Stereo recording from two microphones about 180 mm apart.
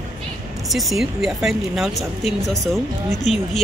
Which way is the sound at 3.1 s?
40° left (ahead or behind).